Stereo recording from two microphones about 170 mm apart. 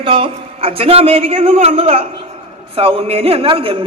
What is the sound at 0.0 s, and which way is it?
A man's voice, 30° right (ahead or behind).